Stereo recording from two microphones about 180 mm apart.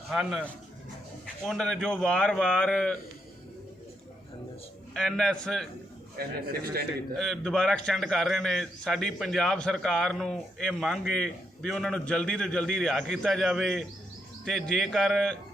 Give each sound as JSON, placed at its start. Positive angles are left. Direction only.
{"t": 0.1, "sound": "a man's voice", "side_deg": 0}
{"t": 1.5, "sound": "a man's voice", "side_deg": 5}
{"t": 4.9, "sound": "a man's voice", "side_deg": 5}
{"t": 6.1, "sound": "a man's voice", "side_deg": -60}
{"t": 7.2, "sound": "a man's voice", "side_deg": 0}